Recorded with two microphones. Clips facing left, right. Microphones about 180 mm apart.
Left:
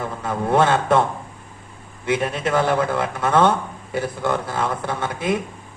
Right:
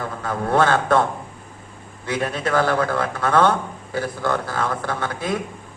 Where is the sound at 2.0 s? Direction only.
25° left (ahead or behind).